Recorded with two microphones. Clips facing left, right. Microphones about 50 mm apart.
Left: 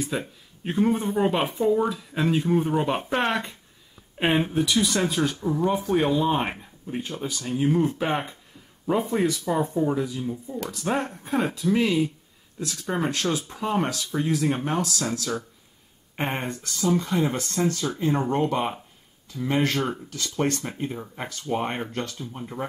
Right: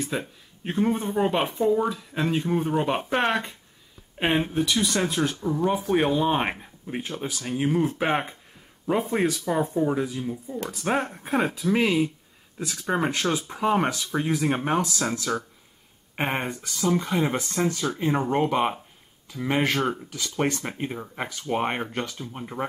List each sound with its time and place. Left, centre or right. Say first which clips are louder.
0.0 s speech: left 1 dB; centre
5.9 s speech: right 1 dB; centre
10.7 s speech: right 1 dB; right
17.0 s speech: even; right
21.0 s speech: right 2 dB; centre